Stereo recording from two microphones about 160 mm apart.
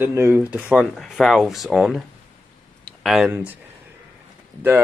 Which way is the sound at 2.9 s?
Centre (ahead or behind).